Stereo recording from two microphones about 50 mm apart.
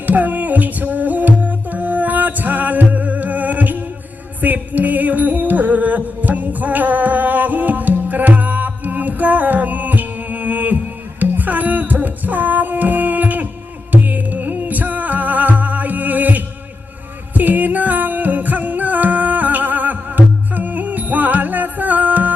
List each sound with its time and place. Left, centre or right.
0.0 s music: right